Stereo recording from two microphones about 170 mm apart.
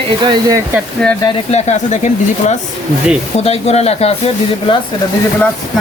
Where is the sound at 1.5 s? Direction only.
45° left (ahead or behind).